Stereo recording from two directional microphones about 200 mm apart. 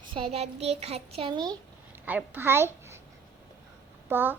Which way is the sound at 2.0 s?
10° right (ahead or behind).